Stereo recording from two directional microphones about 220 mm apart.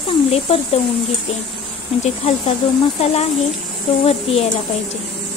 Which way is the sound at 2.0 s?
30° left (ahead or behind).